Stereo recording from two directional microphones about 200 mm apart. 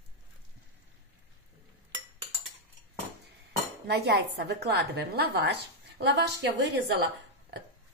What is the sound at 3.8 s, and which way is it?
A woman's voice, 55° right (ahead or behind).